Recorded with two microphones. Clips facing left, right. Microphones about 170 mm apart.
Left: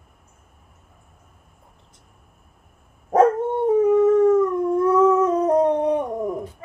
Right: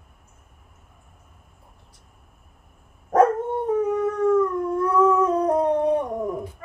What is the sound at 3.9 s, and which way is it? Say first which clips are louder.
Howl: left 5 dB; 20° left (ahead or behind).